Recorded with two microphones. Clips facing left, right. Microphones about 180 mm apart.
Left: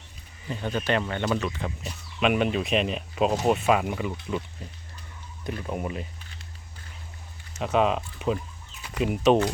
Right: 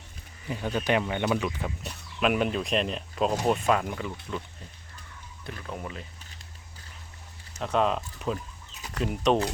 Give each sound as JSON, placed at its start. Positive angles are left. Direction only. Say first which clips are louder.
{"t": 0.4, "sound": "speech", "louder": "even", "side_deg": -10}
{"t": 1.8, "sound": "speech", "louder": "left 2 dB", "side_deg": 0}
{"t": 7.6, "sound": "speech", "louder": "left 2 dB", "side_deg": 5}